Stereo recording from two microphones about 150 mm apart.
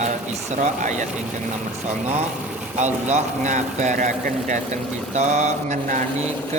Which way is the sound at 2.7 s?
50° right (ahead or behind).